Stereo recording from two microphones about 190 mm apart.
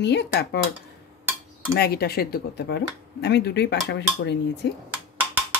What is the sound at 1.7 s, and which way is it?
Speech, 55° left (ahead or behind).